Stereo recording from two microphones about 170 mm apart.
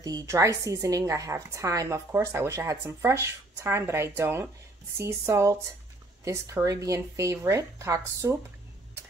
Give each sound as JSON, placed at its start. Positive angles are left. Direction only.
{"t": 0.0, "sound": "a woman's voice", "side_deg": -20}